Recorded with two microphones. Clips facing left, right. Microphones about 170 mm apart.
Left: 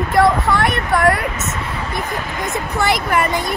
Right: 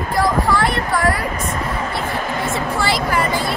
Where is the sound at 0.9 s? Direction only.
55° left (ahead or behind).